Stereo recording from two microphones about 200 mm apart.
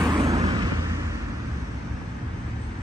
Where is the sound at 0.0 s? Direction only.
20° right (ahead or behind).